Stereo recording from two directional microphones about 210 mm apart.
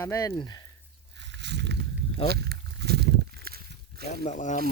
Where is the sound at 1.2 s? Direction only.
55° right (ahead or behind).